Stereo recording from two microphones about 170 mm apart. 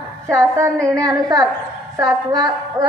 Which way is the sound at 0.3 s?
20° right (ahead or behind).